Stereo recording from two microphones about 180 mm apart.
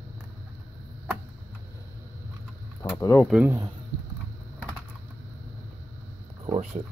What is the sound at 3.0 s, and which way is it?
Speech, 15° left (ahead or behind).